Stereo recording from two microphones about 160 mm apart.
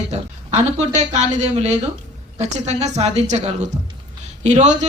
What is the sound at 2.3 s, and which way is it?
A woman's voice, 45° right (ahead or behind).